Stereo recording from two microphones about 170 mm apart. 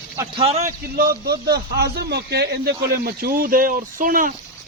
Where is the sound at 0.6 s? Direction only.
65° right (ahead or behind); by 2.6 s 80° right.